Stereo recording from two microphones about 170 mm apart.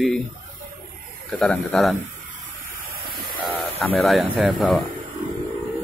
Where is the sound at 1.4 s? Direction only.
5° left (ahead or behind).